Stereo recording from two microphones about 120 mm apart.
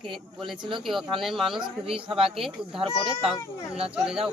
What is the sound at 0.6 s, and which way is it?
Speech, 40° right (ahead or behind).